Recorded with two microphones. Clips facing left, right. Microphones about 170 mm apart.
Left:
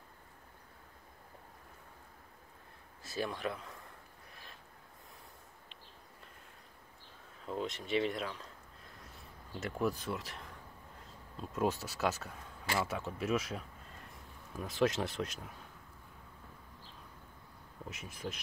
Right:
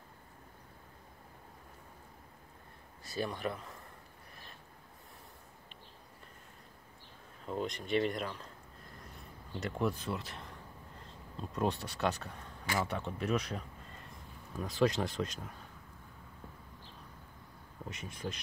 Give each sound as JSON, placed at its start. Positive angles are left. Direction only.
{"t": 3.0, "sound": "speech", "side_deg": 0}
{"t": 7.4, "sound": "speech", "side_deg": 0}
{"t": 9.5, "sound": "speech", "side_deg": 0}
{"t": 17.8, "sound": "speech", "side_deg": 0}